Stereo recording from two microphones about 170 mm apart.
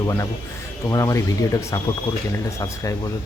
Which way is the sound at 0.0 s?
20° left (ahead or behind).